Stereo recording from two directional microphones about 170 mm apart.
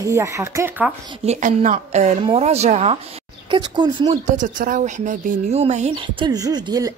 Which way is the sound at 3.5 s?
25° right (ahead or behind).